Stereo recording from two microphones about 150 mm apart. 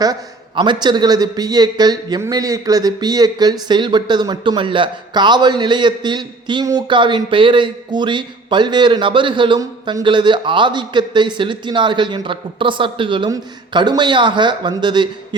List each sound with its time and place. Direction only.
0.0 s a man's voice: 30° right (ahead or behind)